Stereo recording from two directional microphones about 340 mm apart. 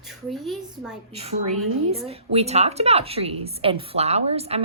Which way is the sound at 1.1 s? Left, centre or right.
Centre.